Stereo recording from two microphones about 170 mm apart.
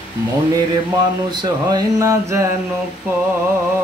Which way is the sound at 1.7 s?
20° right (ahead or behind).